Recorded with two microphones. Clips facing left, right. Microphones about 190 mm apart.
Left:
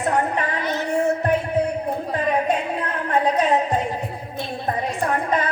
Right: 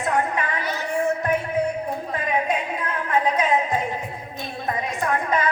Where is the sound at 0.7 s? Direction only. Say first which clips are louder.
Left 3 dB; 25° left (ahead or behind).